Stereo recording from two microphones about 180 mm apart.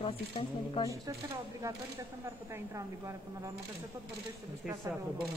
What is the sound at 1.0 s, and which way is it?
Speech, 20° right (ahead or behind).